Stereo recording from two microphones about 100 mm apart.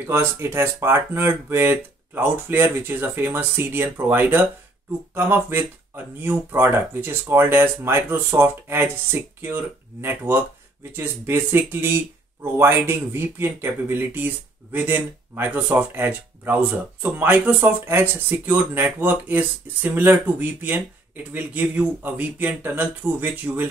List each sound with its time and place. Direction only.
0.0 s speech: 25° right (ahead or behind)